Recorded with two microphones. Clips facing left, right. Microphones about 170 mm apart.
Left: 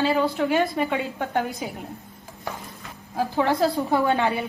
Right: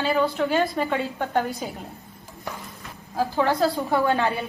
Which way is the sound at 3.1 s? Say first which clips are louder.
Even; 20° left (ahead or behind).